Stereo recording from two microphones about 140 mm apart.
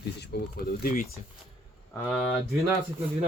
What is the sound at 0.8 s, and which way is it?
Speech, 85° left.